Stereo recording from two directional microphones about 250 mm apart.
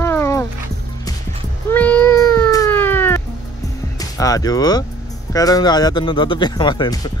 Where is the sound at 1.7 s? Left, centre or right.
Centre.